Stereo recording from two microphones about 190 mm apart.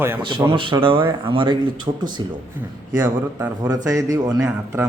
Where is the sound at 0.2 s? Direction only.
25° right (ahead or behind).